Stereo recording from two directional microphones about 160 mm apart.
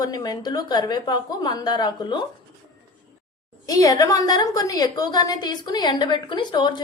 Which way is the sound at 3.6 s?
20° left (ahead or behind).